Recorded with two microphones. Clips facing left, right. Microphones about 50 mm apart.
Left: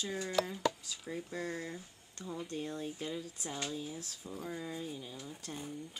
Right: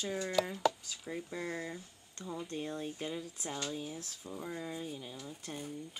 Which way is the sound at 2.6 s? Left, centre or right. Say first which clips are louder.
Right 1 dB; centre.